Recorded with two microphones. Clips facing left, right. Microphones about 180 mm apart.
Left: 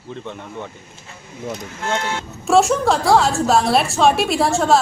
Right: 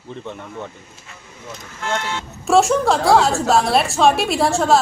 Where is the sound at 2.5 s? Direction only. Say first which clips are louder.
Even; centre (ahead or behind).